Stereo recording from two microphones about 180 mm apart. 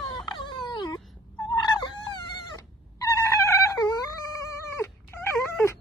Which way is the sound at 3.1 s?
15° left (ahead or behind).